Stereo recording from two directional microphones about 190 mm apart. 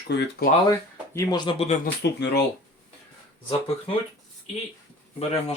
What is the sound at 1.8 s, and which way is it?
Speech, 60° left (ahead or behind).